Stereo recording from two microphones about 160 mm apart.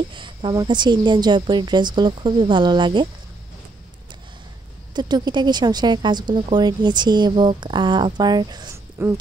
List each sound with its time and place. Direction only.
0.1 s a woman's voice: 30° right (ahead or behind)
4.9 s a woman's voice: 25° right (ahead or behind)
9.0 s speech: 15° right (ahead or behind)